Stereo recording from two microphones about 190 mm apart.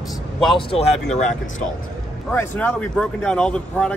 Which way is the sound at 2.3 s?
10° left (ahead or behind).